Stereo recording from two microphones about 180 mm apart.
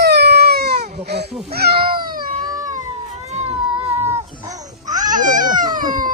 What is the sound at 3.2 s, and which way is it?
Cat, 40° right (ahead or behind).